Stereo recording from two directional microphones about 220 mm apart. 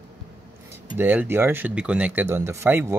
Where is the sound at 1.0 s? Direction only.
10° right (ahead or behind).